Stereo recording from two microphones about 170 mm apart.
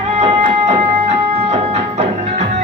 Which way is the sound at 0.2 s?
40° right (ahead or behind).